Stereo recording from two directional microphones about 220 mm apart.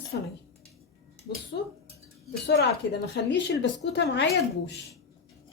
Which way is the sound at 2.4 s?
50° left (ahead or behind).